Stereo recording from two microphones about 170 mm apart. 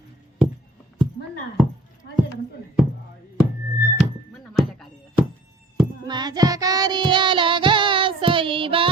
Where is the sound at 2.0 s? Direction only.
85° left.